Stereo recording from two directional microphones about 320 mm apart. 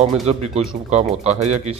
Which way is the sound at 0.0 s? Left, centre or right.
Centre.